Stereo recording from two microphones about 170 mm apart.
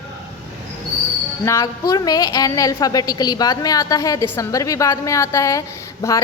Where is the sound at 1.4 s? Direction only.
20° left (ahead or behind).